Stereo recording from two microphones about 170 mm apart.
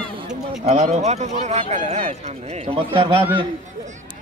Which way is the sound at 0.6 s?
40° right (ahead or behind).